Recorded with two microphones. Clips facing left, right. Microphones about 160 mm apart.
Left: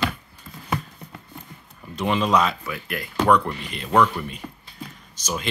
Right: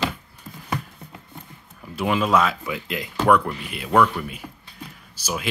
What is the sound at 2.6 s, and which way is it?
Speech, 20° right (ahead or behind).